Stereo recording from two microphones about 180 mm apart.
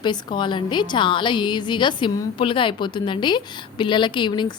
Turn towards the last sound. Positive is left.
turn(degrees=25)  # may be behind; listen again after turning